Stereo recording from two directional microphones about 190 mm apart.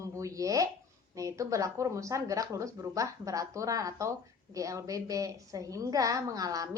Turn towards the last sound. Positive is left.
turn(degrees=-20)  # may be behind; listen again after turning